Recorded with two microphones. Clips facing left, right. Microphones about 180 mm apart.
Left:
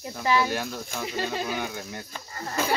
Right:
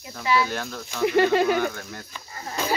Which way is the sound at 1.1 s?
70° right (ahead or behind).